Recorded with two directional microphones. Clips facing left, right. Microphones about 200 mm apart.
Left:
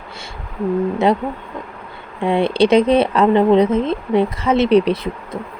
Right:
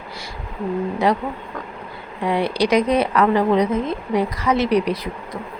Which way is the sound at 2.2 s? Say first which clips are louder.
Left 5 dB; 25° left (ahead or behind).